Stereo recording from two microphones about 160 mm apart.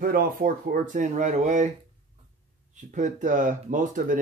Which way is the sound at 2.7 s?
50° right (ahead or behind).